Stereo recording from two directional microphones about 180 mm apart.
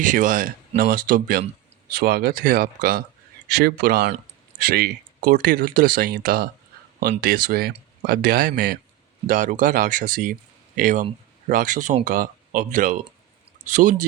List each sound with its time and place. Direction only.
0.0 s speech: 45° right (ahead or behind)
3.5 s speech: 60° right (ahead or behind); by 13.9 s 45° right (ahead or behind)